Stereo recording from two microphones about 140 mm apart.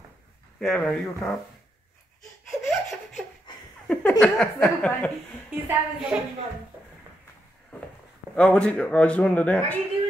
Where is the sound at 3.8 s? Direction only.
10° left (ahead or behind).